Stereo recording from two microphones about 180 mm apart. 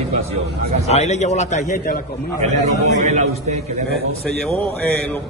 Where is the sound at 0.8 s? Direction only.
40° left (ahead or behind).